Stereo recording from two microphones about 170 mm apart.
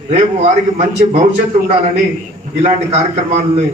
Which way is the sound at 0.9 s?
45° right (ahead or behind).